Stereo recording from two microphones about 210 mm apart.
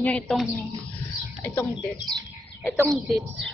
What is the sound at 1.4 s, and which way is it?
Speech, 15° left (ahead or behind).